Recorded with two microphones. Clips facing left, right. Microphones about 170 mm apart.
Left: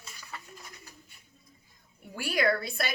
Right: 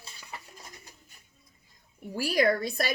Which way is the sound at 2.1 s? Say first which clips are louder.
Right 3 dB; 35° right (ahead or behind).